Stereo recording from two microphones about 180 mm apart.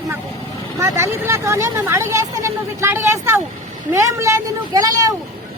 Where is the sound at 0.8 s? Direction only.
15° right (ahead or behind).